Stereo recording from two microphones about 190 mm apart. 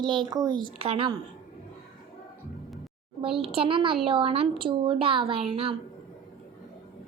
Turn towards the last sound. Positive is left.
turn(degrees=-30)  # may be behind; listen again after turning